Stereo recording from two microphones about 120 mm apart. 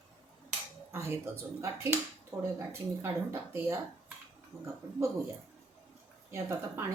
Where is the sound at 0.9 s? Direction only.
20° right (ahead or behind).